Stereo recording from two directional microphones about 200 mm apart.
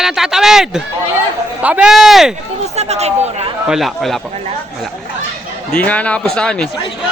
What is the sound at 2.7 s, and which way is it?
Speech, 35° right (ahead or behind).